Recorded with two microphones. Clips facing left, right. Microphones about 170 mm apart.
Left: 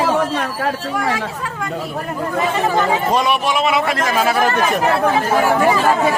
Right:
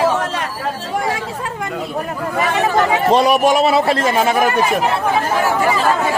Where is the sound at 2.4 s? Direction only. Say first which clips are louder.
Right 2 dB; 70° right (ahead or behind).